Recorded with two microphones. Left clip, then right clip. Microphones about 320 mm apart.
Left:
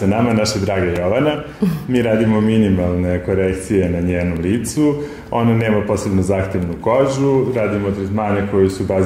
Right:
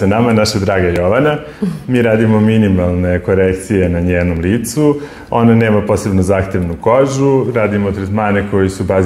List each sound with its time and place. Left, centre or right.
0.1 s a man's voice: right